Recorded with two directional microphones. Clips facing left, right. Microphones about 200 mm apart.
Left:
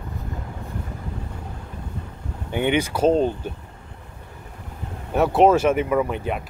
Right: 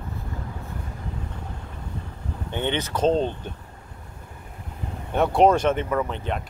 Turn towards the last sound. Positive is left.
turn(degrees=10)  # may be behind; listen again after turning